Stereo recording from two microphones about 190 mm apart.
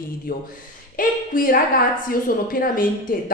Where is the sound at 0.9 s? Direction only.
45° left (ahead or behind).